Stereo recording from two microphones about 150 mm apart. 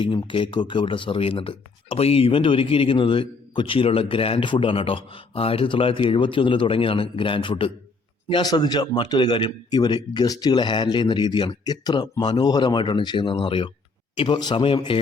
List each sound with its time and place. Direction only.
0.0 s a man's voice: 35° left (ahead or behind)